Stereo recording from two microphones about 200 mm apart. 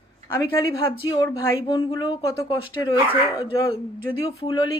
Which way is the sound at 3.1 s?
10° right (ahead or behind).